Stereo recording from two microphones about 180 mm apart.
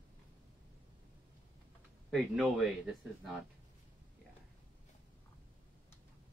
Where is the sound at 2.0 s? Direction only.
Centre (ahead or behind).